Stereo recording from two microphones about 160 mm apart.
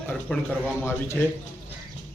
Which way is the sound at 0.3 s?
10° left (ahead or behind).